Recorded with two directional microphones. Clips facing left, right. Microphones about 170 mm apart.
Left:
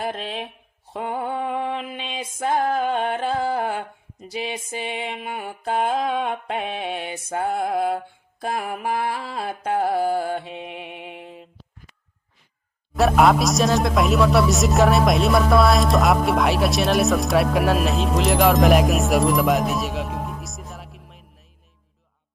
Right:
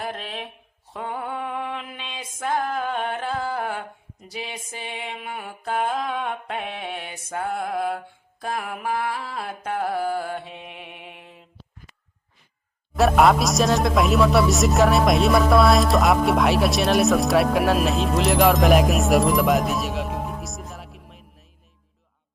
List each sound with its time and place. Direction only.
0.0 s music: 25° left (ahead or behind)
13.0 s speech: centre (ahead or behind)